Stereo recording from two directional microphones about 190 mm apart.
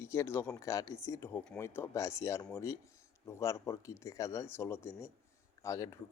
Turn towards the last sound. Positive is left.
turn(degrees=15)  # may be behind; listen again after turning